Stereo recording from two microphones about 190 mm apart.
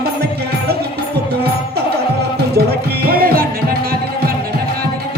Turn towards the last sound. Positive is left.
turn(degrees=-50)  # may be behind; listen again after turning